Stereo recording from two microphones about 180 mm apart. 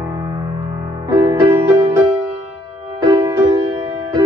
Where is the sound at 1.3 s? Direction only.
20° right (ahead or behind).